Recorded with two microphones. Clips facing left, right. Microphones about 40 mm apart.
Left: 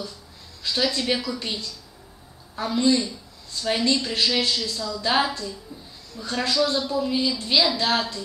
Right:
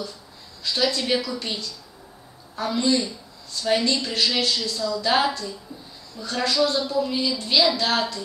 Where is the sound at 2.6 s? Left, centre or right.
Centre.